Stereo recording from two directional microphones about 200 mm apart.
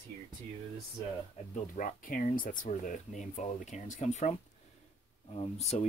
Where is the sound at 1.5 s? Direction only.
45° left (ahead or behind).